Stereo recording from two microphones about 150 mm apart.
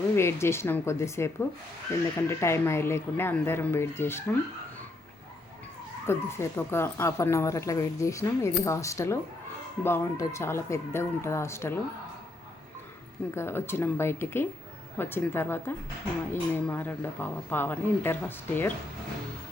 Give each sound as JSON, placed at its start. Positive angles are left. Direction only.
{"t": 0.2, "sound": "speech", "side_deg": 15}
{"t": 6.1, "sound": "speech", "side_deg": 15}
{"t": 13.3, "sound": "speech", "side_deg": 15}